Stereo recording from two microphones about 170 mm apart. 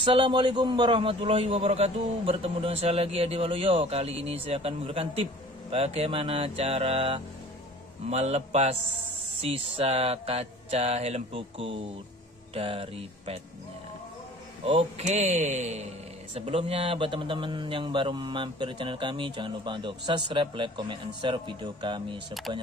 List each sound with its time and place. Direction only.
0.0 s a man's voice: 30° right (ahead or behind)
14.6 s a man's voice: 35° right (ahead or behind)